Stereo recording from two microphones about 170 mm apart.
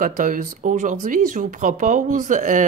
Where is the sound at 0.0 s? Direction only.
50° right (ahead or behind).